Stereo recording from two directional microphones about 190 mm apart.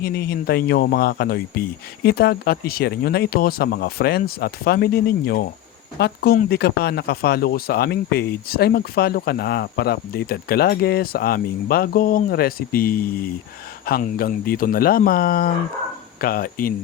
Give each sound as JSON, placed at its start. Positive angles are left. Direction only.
{"t": 0.0, "sound": "speech", "side_deg": 55}